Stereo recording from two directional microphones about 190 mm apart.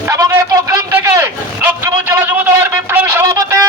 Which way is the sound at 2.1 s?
10° right (ahead or behind).